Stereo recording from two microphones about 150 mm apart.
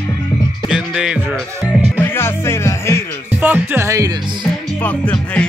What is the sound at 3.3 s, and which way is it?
Music, 15° right (ahead or behind).